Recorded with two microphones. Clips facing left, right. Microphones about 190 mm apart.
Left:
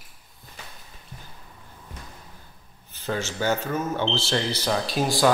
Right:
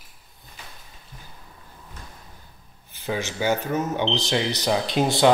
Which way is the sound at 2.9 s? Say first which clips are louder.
Right 1 dB; 15° right (ahead or behind).